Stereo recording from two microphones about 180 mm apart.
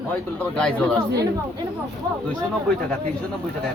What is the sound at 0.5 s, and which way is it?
Speech, 5° left (ahead or behind).